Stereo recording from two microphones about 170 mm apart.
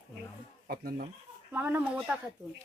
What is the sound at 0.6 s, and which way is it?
Speech, 55° right (ahead or behind).